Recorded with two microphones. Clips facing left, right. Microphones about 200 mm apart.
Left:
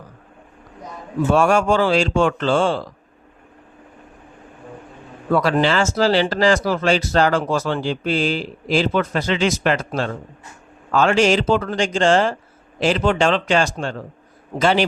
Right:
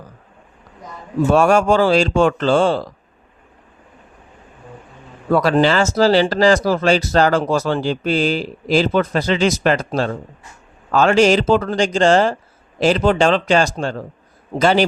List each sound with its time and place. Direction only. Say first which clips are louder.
1.3 s speech: right 2 dB; 40° right (ahead or behind)
5.3 s speech: right 3 dB; 40° right (ahead or behind)